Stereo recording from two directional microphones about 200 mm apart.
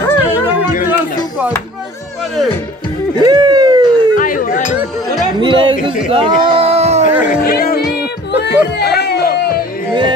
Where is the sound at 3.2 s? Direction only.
20° right (ahead or behind).